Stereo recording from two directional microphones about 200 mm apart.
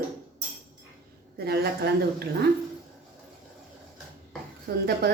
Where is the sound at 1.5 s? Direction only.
50° right (ahead or behind).